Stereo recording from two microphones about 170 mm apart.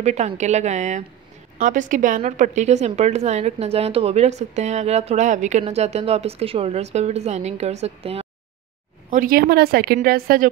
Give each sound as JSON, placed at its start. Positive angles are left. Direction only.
{"t": 0.0, "sound": "a woman's voice", "side_deg": -40}
{"t": 9.1, "sound": "a woman's voice", "side_deg": -55}